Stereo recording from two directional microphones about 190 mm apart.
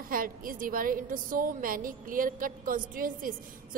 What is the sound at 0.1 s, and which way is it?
A woman's voice, 50° right (ahead or behind).